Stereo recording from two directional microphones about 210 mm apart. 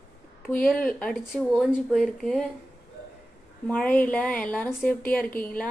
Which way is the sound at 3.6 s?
5° left (ahead or behind).